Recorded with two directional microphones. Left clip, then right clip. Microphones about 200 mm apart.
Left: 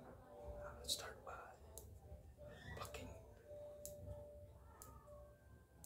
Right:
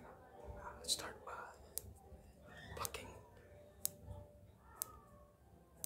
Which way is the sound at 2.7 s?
15° right (ahead or behind).